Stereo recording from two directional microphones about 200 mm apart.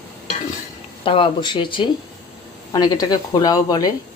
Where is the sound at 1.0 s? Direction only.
25° left (ahead or behind).